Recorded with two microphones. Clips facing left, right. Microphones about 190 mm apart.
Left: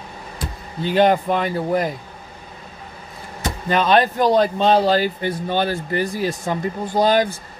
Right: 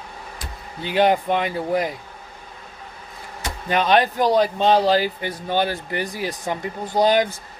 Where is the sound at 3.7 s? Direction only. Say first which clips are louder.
Left 1 dB; 15° right (ahead or behind).